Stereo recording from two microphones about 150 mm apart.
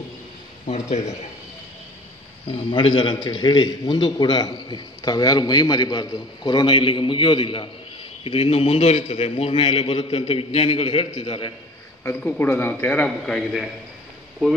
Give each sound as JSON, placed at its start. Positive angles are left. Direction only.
{"t": 0.7, "sound": "speech", "side_deg": 50}
{"t": 2.5, "sound": "a man's voice", "side_deg": 35}
{"t": 12.0, "sound": "a man's voice", "side_deg": 15}